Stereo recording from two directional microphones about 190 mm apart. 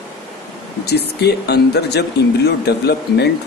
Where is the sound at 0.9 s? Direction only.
60° left (ahead or behind).